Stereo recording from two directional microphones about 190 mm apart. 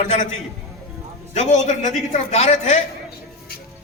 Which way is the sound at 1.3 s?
40° left (ahead or behind).